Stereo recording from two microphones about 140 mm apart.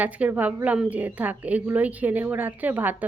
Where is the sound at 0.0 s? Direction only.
10° right (ahead or behind).